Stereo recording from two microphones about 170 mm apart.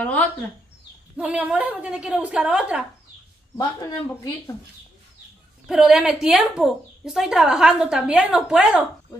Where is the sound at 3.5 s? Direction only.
15° left (ahead or behind).